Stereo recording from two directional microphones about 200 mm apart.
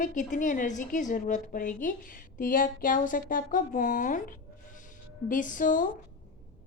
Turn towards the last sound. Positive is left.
turn(degrees=40)  # may be behind; listen again after turning